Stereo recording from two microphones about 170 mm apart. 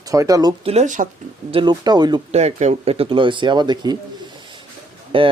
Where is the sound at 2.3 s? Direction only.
40° right (ahead or behind).